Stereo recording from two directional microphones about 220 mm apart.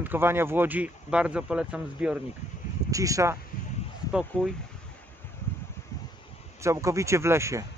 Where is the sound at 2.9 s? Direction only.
15° right (ahead or behind).